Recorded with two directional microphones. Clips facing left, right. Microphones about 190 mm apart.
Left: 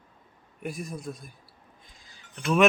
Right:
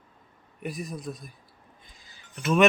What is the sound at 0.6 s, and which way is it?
Speech, centre (ahead or behind).